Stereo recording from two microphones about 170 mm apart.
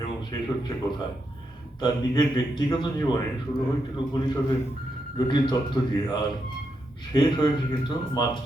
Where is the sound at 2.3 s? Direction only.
25° left (ahead or behind).